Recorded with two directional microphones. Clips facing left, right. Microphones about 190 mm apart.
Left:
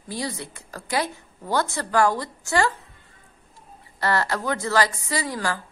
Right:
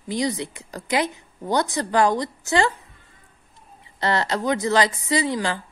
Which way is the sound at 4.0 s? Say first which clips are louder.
Right 1 dB; 20° right (ahead or behind).